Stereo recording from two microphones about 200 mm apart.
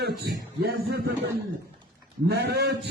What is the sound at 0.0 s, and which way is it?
Speech, 50° right (ahead or behind).